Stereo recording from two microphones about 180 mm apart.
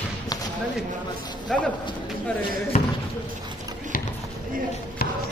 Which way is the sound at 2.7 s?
45° left (ahead or behind).